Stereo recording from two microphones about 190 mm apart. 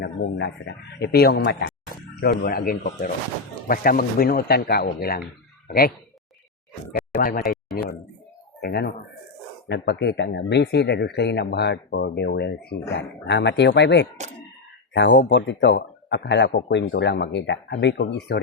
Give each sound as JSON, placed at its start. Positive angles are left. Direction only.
{"t": 0.0, "sound": "speech", "side_deg": 65}
{"t": 6.9, "sound": "speech", "side_deg": 45}
{"t": 7.4, "sound": "speech", "side_deg": 0}
{"t": 8.6, "sound": "speech", "side_deg": 60}
{"t": 16.9, "sound": "speech", "side_deg": 70}